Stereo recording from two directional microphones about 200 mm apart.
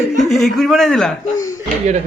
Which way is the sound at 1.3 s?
15° left (ahead or behind).